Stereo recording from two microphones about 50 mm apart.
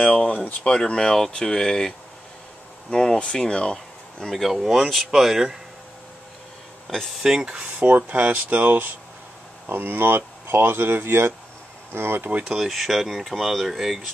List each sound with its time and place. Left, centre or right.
0.0 s a sound: left
0.5 s speech: left
4.5 s speech: centre
7.2 s speech: centre
7.8 s speech: right
12.6 s speech: centre